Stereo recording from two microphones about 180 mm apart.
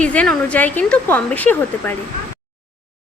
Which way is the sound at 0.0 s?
5° left (ahead or behind).